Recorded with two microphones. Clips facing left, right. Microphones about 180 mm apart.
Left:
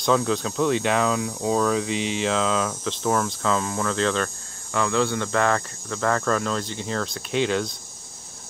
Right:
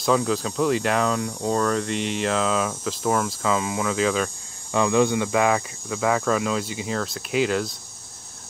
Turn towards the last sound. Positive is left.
turn(degrees=0)  # may be behind; listen again after turning